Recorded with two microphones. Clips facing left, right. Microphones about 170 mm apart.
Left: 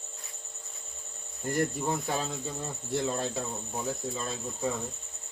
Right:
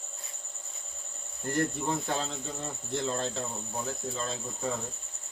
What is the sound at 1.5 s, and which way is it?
Cricket, 10° left (ahead or behind).